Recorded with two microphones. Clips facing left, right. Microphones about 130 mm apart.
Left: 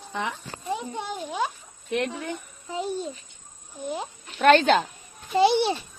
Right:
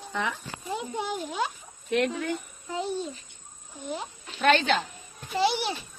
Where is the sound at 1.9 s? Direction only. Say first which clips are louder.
Right 2 dB; 20° left (ahead or behind).